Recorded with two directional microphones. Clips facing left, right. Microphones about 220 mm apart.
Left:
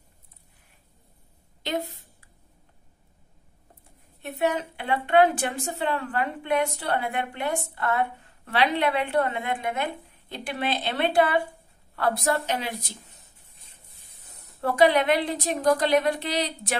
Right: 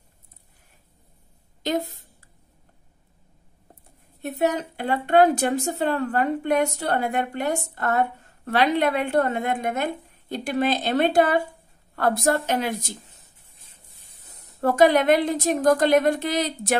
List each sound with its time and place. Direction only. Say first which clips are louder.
1.6 s a woman's voice: right 4 dB; 45° right (ahead or behind)
4.2 s a woman's voice: right 3 dB; 40° right (ahead or behind)
14.6 s a woman's voice: right 3 dB; 45° right (ahead or behind)